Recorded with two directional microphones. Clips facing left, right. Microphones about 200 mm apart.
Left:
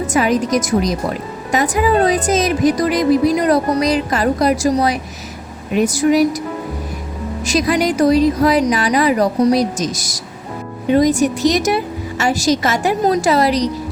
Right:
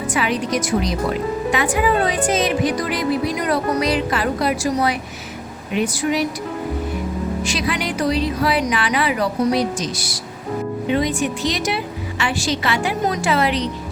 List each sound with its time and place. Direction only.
0.1 s a woman's voice: 45° left (ahead or behind)
7.4 s a woman's voice: 40° left (ahead or behind)